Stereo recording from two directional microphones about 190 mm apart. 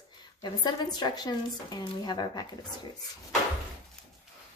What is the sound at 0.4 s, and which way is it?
Speech, 20° left (ahead or behind).